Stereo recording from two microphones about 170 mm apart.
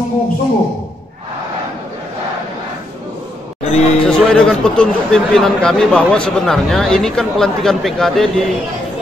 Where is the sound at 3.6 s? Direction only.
40° left (ahead or behind).